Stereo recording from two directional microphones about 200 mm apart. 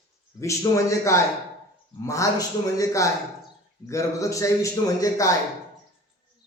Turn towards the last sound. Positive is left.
turn(degrees=15)  # may be behind; listen again after turning